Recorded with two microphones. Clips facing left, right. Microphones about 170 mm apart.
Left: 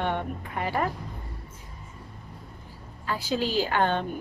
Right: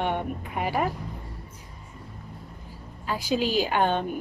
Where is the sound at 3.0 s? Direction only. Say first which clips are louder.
Right 2 dB; 15° right (ahead or behind).